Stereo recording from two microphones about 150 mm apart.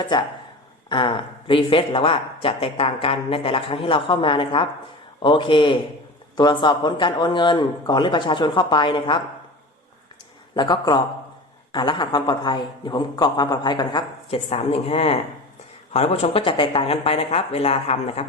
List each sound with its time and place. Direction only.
0.0 s speech: 30° left (ahead or behind)
10.5 s speech: 30° left (ahead or behind)